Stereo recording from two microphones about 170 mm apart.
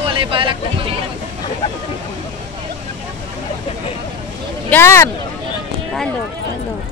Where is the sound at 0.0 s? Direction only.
30° right (ahead or behind).